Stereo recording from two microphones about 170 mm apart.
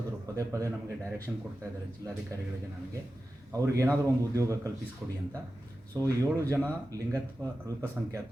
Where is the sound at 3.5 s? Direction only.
15° right (ahead or behind).